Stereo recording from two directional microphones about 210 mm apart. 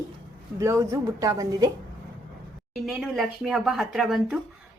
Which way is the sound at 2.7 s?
Centre (ahead or behind).